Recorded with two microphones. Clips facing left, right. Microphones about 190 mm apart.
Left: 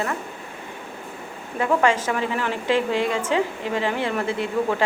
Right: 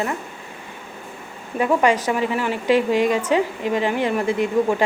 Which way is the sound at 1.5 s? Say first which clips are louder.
Right 2 dB; 15° right (ahead or behind).